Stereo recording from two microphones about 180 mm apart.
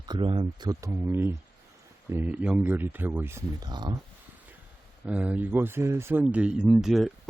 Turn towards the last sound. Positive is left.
turn(degrees=0)  # may be behind; listen again after turning